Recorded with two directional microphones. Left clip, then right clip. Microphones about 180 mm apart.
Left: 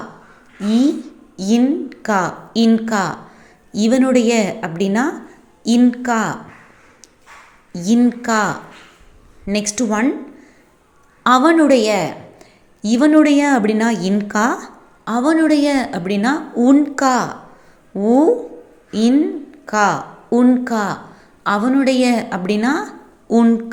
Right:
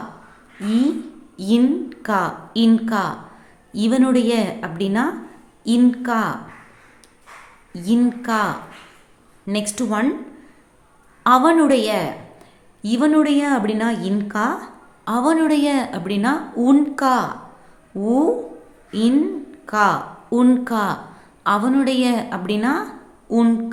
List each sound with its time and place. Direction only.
0.7 s a sound: 20° left (ahead or behind)
1.9 s a woman's voice: 15° left (ahead or behind)
7.7 s a woman's voice: 20° left (ahead or behind)
11.2 s a woman's voice: 15° left (ahead or behind)